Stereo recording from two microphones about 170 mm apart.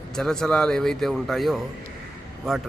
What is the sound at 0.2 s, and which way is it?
A man's voice, 5° left (ahead or behind).